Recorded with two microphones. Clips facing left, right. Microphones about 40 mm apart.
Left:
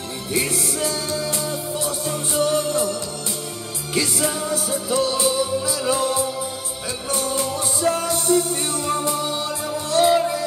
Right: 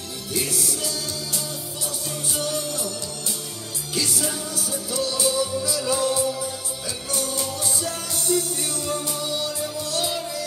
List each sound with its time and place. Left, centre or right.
0.3 s music: left